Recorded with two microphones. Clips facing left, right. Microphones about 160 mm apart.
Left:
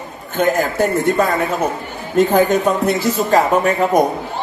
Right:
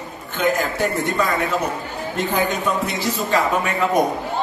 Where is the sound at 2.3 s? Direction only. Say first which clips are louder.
Left 7 dB; 45° left (ahead or behind).